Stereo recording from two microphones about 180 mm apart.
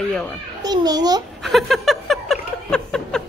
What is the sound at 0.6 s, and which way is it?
Speech, 20° right (ahead or behind).